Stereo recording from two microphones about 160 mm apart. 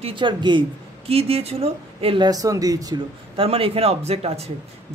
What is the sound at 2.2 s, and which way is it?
Speech, 20° right (ahead or behind).